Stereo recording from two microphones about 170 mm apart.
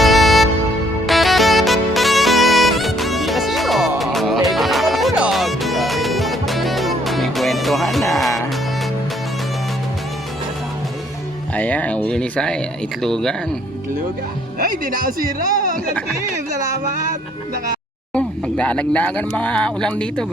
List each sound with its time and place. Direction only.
0.0 s music: centre (ahead or behind)
11.5 s speech: 10° left (ahead or behind)
14.6 s speech: 55° right (ahead or behind)
15.4 s music: 55° right (ahead or behind)
18.1 s speech: 5° left (ahead or behind)